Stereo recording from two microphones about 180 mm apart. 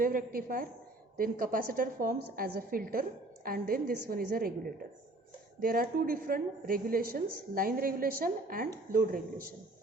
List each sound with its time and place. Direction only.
0.0 s a woman's voice: 50° right (ahead or behind)
5.5 s a woman's voice: 55° right (ahead or behind)